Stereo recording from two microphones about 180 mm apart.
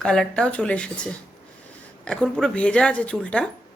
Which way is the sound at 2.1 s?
5° left (ahead or behind).